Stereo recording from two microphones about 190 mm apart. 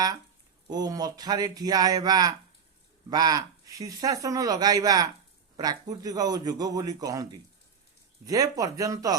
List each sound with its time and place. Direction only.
0.7 s speech: 20° right (ahead or behind)